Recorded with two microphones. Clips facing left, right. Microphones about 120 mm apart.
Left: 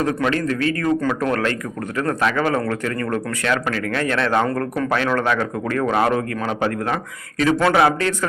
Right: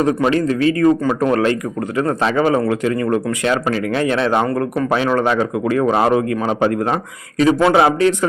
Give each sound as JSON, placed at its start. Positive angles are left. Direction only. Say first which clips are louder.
{"t": 0.3, "sound": "a man's voice", "louder": "right 5 dB", "side_deg": -20}
{"t": 4.4, "sound": "a man's voice", "louder": "right 3 dB", "side_deg": -10}